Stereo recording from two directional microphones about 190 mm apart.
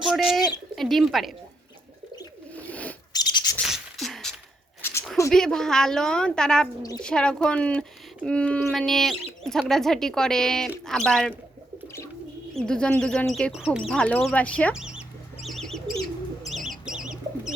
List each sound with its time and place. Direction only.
0.0 s speech: centre (ahead or behind)
0.3 s speech: 20° left (ahead or behind)
0.8 s speech: centre (ahead or behind)
2.6 s a sound: 5° left (ahead or behind)
3.1 s rub: 20° left (ahead or behind)
3.7 s beatboxing: centre (ahead or behind)
4.8 s a sound: 10° left (ahead or behind)
5.3 s speech: 5° left (ahead or behind)
12.5 s speech: 5° left (ahead or behind)
14.7 s bird: 5° right (ahead or behind)